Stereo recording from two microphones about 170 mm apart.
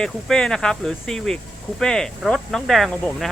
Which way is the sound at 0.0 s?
5° left (ahead or behind).